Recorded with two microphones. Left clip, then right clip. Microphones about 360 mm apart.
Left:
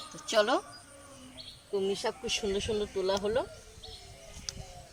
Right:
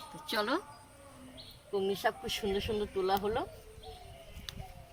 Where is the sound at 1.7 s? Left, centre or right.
Centre.